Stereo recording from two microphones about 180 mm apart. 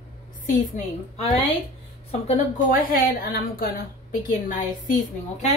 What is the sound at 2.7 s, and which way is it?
A woman's voice, 50° left (ahead or behind).